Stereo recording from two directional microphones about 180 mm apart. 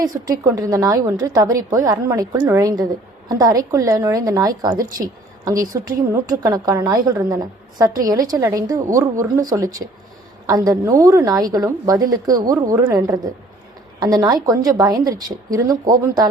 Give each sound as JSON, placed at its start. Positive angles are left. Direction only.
{"t": 0.0, "sound": "a woman's voice", "side_deg": -20}